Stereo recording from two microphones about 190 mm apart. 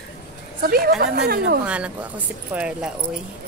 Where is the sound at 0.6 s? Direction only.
50° right (ahead or behind).